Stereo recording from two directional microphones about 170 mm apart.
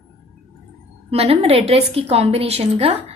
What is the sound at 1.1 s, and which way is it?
A woman's voice, 35° right (ahead or behind).